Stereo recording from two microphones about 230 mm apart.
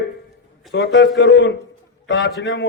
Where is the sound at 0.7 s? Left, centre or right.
Left.